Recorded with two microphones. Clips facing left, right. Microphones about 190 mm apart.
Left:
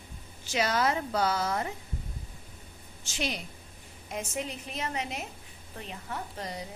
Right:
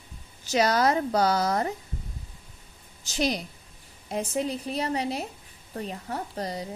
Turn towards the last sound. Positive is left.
turn(degrees=-35)  # may be behind; listen again after turning